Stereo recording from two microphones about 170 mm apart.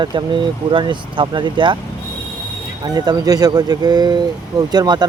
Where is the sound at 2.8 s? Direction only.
25° right (ahead or behind).